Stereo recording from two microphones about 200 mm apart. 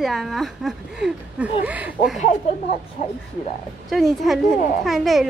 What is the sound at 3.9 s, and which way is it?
Speech, centre (ahead or behind).